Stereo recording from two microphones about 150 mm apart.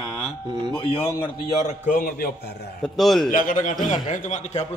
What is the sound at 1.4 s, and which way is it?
Speech, 50° left (ahead or behind).